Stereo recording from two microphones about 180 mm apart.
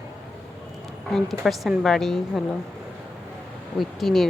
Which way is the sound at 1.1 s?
Centre (ahead or behind).